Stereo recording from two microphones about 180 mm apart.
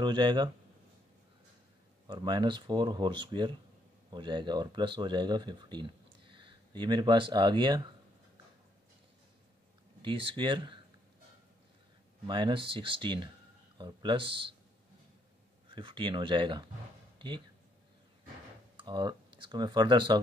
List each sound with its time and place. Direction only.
0.0 s speech: 25° right (ahead or behind)
2.0 s speech: 25° right (ahead or behind)
10.0 s speech: 25° right (ahead or behind)
12.3 s speech: 25° right (ahead or behind)
15.7 s speech: 25° right (ahead or behind)
18.9 s speech: 25° right (ahead or behind)